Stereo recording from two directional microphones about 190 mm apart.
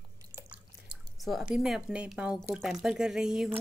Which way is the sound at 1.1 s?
Centre (ahead or behind).